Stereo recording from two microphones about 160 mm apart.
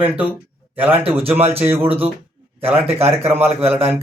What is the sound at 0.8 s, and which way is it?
Speech, 10° right (ahead or behind).